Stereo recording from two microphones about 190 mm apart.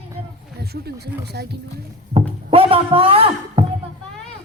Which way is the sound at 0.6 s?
55° right (ahead or behind).